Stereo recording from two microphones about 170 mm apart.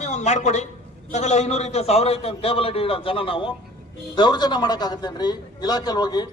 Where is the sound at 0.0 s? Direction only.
40° left (ahead or behind).